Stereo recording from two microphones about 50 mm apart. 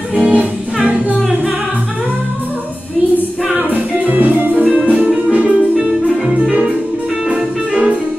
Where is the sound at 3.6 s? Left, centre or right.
Right.